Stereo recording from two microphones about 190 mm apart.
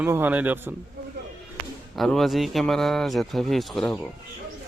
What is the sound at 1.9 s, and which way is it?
Speech, centre (ahead or behind).